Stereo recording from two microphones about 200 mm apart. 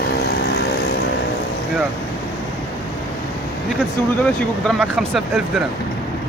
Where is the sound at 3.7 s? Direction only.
Centre (ahead or behind).